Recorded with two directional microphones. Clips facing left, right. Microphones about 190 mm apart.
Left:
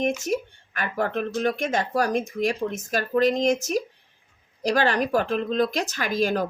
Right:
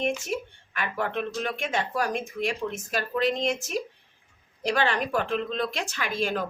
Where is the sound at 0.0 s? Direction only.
40° left (ahead or behind).